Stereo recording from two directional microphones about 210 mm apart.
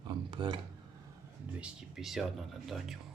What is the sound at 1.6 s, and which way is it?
Speech, 5° right (ahead or behind).